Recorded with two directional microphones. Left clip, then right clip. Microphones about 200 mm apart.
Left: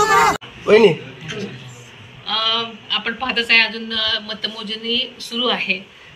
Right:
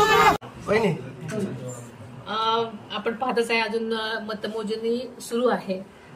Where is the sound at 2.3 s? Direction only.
15° right (ahead or behind).